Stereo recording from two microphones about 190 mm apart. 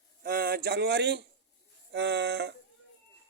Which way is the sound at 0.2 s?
50° right (ahead or behind).